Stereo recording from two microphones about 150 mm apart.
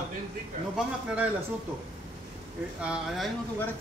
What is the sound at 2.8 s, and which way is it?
Speech, 5° right (ahead or behind).